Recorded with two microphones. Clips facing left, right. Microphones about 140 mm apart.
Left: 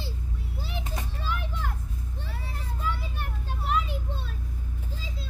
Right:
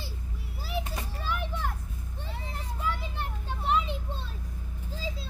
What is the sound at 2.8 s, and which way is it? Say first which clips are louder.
Vehicle: even; 15° right (ahead or behind).